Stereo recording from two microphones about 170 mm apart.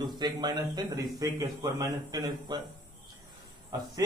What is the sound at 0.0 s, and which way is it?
A man's voice, 25° right (ahead or behind).